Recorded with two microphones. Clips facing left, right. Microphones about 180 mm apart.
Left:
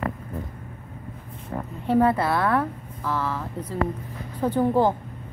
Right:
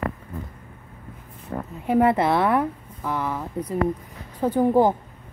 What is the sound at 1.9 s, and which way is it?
A woman's voice, 20° right (ahead or behind).